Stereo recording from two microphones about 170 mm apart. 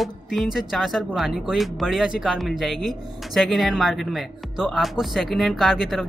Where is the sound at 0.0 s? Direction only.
Centre (ahead or behind).